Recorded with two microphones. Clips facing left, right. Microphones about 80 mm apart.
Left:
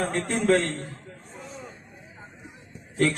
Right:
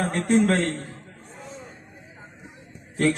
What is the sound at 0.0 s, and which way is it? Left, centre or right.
Speech, right.